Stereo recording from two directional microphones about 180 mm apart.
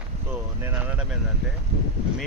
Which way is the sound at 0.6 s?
10° right (ahead or behind).